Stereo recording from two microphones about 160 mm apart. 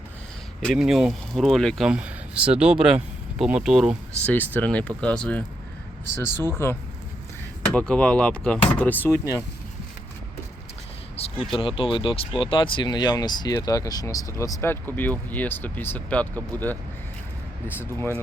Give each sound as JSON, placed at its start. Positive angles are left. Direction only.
{"t": 0.6, "sound": "speech", "side_deg": 0}
{"t": 4.2, "sound": "speech", "side_deg": 10}
{"t": 7.7, "sound": "speech", "side_deg": 5}
{"t": 11.2, "sound": "speech", "side_deg": 35}